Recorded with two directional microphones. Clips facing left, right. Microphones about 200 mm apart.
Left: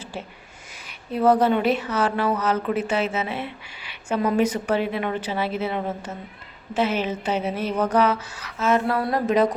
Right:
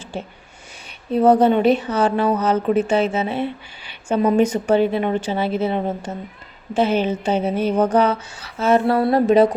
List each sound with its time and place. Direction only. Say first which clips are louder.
1.1 s a woman's voice: right 4 dB; 30° right (ahead or behind)